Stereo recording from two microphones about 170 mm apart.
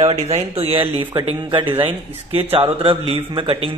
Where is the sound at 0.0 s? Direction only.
35° right (ahead or behind).